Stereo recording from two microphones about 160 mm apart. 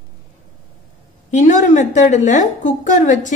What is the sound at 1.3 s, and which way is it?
A woman's voice, 50° left (ahead or behind).